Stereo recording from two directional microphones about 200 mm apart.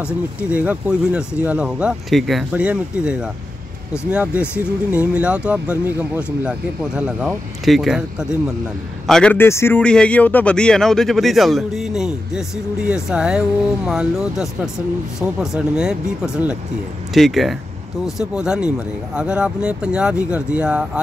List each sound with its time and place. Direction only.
0.0 s a man's voice: 5° right (ahead or behind)